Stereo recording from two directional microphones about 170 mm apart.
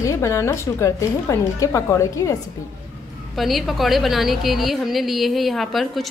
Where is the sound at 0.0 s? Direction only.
15° left (ahead or behind).